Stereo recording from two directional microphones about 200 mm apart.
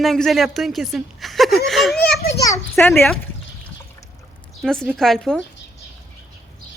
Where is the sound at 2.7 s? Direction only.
Centre (ahead or behind).